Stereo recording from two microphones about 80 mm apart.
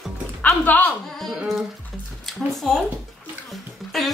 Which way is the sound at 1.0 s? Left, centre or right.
Centre.